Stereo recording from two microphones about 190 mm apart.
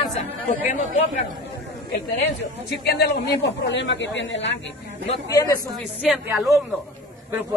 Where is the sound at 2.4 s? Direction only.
60° left (ahead or behind); by 4.5 s 75° left (ahead or behind).